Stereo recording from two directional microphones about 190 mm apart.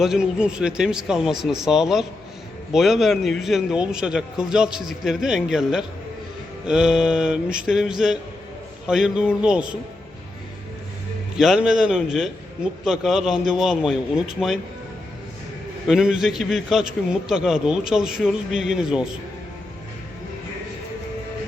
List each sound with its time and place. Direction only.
0.0 s a man's voice: 5° right (ahead or behind)
11.3 s a man's voice: centre (ahead or behind)
15.9 s a man's voice: 5° right (ahead or behind)